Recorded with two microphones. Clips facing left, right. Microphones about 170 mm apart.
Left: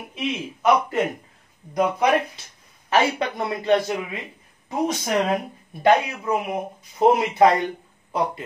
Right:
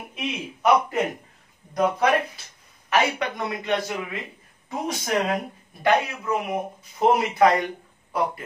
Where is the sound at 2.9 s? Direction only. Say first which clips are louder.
Left 2 dB; 30° left (ahead or behind).